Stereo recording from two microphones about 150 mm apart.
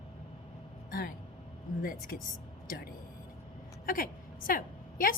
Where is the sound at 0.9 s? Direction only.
70° left (ahead or behind).